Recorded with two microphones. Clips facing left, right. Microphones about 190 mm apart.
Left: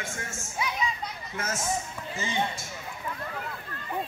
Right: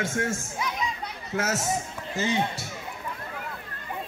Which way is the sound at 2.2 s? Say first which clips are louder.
Right 4 dB; 70° right (ahead or behind).